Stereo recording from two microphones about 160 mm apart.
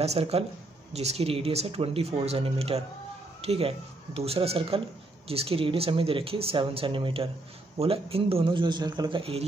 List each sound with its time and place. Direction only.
0.0 s speech: 40° right (ahead or behind)